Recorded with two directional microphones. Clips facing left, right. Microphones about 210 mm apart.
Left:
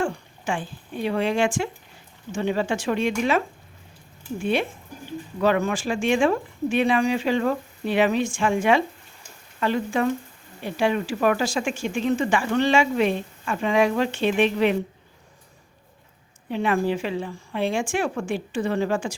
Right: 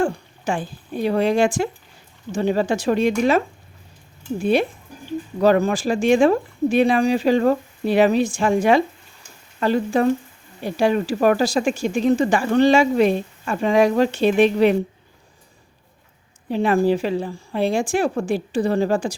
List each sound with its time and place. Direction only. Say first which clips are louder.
0.0 s speech: right 5 dB; 40° right (ahead or behind)
16.5 s speech: right 5 dB; 35° right (ahead or behind)